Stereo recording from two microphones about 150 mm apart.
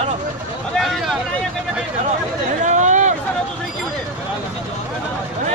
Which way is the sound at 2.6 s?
55° right (ahead or behind).